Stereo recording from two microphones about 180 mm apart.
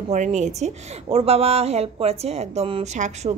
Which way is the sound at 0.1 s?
40° right (ahead or behind).